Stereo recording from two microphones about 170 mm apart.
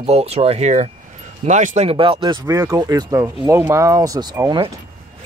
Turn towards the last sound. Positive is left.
turn(degrees=-20)  # may be behind; listen again after turning